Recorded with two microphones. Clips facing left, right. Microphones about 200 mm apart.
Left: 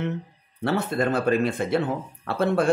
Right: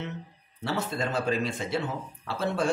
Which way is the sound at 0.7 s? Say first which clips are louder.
Left 7 dB; 55° left (ahead or behind).